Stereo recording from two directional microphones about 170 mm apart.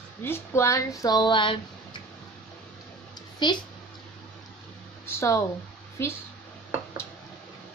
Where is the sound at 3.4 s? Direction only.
25° left (ahead or behind).